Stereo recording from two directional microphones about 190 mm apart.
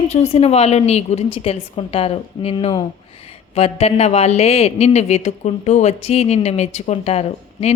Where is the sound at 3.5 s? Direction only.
35° left (ahead or behind).